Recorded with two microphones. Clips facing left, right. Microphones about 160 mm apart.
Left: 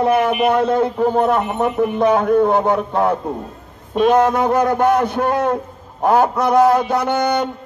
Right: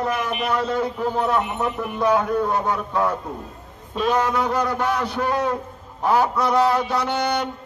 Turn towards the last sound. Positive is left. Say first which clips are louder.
# left 5 dB
turn(degrees=50)  # may be behind; listen again after turning